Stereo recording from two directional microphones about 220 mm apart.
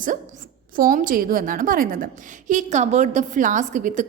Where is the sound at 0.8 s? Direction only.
40° right (ahead or behind).